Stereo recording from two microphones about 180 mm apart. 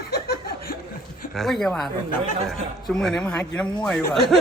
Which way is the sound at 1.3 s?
Centre (ahead or behind).